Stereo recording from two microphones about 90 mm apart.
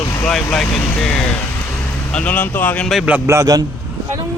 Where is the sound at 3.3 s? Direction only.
40° right (ahead or behind).